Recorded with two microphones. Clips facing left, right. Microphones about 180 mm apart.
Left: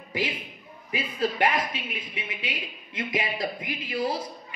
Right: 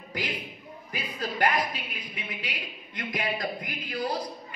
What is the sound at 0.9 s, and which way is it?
A man's voice, centre (ahead or behind).